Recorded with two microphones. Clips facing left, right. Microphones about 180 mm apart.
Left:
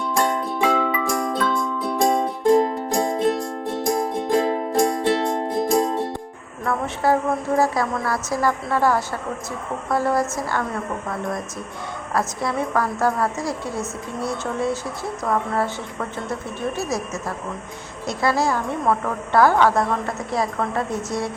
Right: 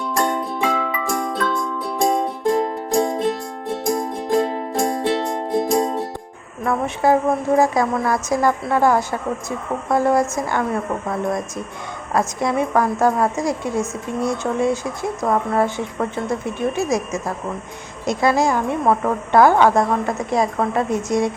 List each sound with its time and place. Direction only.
0.1 s music: centre (ahead or behind)
6.7 s a woman's voice: 15° right (ahead or behind)
12.1 s a woman's voice: 20° right (ahead or behind)